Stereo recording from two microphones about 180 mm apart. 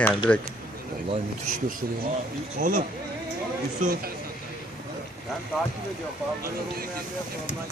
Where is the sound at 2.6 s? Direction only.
50° right (ahead or behind).